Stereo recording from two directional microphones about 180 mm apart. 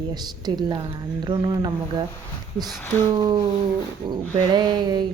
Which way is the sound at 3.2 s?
25° right (ahead or behind).